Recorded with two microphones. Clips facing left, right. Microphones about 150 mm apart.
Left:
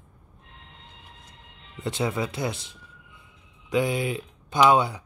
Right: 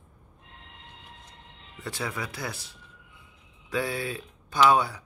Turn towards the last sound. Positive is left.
turn(degrees=20)  # may be behind; listen again after turning